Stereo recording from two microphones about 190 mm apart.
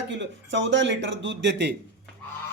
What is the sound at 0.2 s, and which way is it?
Speech, 75° right (ahead or behind).